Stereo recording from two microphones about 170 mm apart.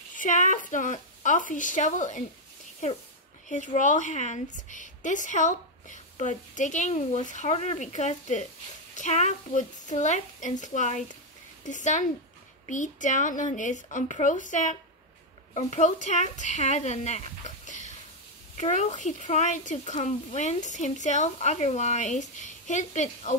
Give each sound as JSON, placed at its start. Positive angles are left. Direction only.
{"t": 0.2, "sound": "a woman's voice", "side_deg": 45}